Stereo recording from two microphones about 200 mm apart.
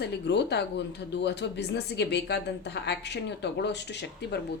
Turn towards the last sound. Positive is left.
turn(degrees=60)  # may be behind; listen again after turning